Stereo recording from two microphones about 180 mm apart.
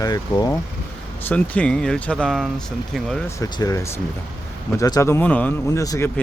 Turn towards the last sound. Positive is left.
turn(degrees=20)  # may be behind; listen again after turning